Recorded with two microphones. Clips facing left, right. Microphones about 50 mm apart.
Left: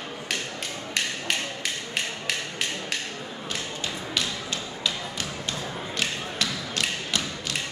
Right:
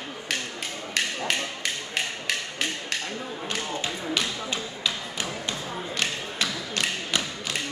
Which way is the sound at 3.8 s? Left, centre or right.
Centre.